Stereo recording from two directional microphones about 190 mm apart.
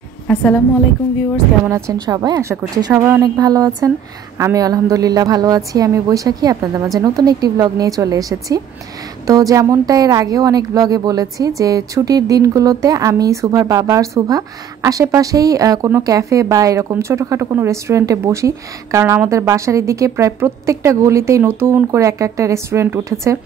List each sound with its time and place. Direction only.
0.3 s a woman's voice: 5° left (ahead or behind)
1.7 s a woman's voice: 15° right (ahead or behind)